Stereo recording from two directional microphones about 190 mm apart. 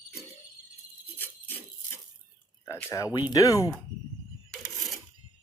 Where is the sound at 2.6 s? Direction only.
10° left (ahead or behind).